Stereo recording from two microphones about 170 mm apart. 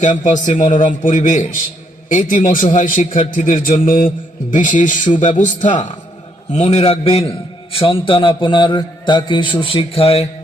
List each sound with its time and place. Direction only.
0.0 s a man's voice: 45° left (ahead or behind)